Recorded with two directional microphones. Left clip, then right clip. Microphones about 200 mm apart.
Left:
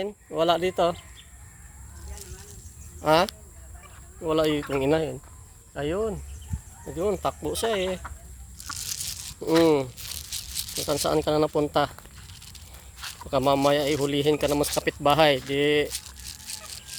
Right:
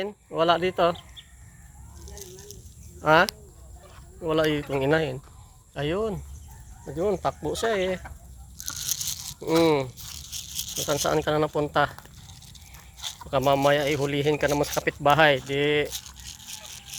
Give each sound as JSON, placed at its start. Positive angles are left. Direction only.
{"t": 0.0, "sound": "speech", "side_deg": 25}
{"t": 3.0, "sound": "speech", "side_deg": 20}
{"t": 5.7, "sound": "speech", "side_deg": 0}
{"t": 6.8, "sound": "speech", "side_deg": 15}
{"t": 9.4, "sound": "speech", "side_deg": 35}
{"t": 13.3, "sound": "speech", "side_deg": 35}